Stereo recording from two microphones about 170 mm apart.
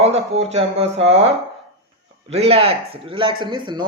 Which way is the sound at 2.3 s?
35° right (ahead or behind).